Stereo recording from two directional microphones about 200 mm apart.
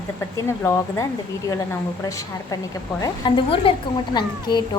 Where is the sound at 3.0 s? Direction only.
25° left (ahead or behind).